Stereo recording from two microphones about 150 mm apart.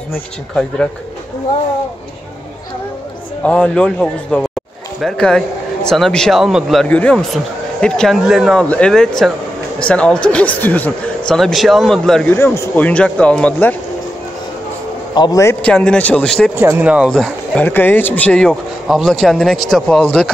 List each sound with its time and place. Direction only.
3.4 s speech: 10° left (ahead or behind)
15.1 s a man's voice: 30° left (ahead or behind)
15.6 s speech: 5° left (ahead or behind)
16.5 s speech: 15° right (ahead or behind)
17.1 s speech: 5° left (ahead or behind)